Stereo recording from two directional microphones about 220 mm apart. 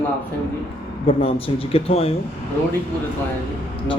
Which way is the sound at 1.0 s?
25° left (ahead or behind).